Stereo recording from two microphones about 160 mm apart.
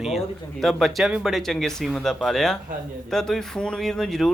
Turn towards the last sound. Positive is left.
turn(degrees=0)  # may be behind; listen again after turning